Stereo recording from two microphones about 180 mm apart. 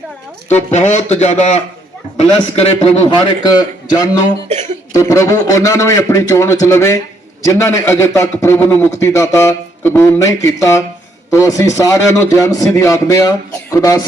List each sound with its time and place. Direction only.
0.4 s a man's voice: 40° left (ahead or behind); by 14.0 s 20° left (ahead or behind)